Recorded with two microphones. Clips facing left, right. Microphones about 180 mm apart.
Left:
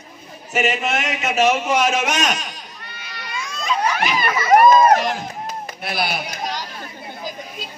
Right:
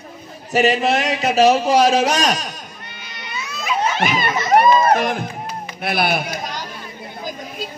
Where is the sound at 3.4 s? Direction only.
5° right (ahead or behind).